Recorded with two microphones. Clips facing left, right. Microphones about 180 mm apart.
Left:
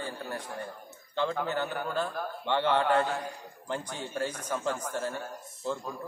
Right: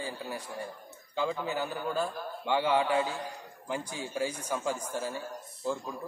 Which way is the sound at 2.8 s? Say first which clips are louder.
Left 3 dB; 65° left (ahead or behind).